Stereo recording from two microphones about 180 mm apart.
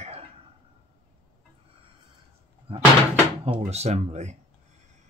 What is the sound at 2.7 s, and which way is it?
Speech, 35° right (ahead or behind).